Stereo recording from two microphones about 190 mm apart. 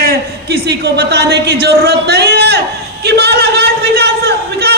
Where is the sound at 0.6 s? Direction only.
60° right (ahead or behind).